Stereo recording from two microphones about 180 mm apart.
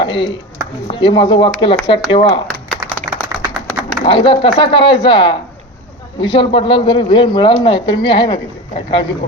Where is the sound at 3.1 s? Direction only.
20° right (ahead or behind).